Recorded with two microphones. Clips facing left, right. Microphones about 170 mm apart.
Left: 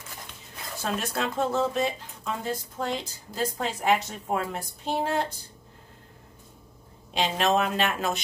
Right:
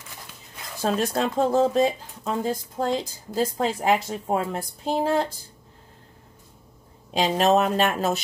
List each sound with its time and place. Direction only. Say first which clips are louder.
0.8 s speech: right 6 dB; 35° right (ahead or behind)
7.2 s speech: right 5 dB; 40° right (ahead or behind)